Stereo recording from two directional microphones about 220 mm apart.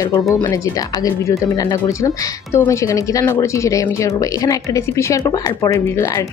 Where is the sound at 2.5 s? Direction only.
15° left (ahead or behind).